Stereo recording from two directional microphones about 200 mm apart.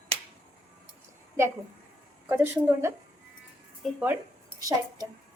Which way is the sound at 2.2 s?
10° right (ahead or behind).